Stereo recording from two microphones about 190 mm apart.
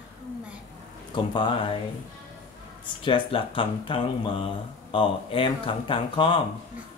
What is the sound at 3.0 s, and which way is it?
Speech, 25° left (ahead or behind).